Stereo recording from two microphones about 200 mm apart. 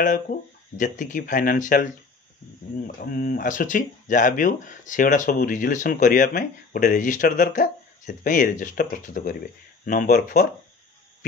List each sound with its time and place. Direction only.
0.0 s speech: 40° left (ahead or behind)
3.0 s speech: 45° left (ahead or behind)